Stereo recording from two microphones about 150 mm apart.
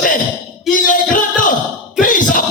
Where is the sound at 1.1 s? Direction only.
60° left (ahead or behind).